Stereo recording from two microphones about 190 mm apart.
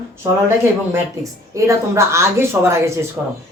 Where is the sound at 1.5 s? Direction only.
15° right (ahead or behind).